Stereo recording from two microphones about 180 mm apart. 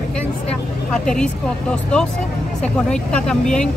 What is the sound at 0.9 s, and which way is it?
Speech, 5° left (ahead or behind).